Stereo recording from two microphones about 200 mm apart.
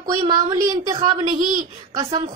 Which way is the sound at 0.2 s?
20° right (ahead or behind).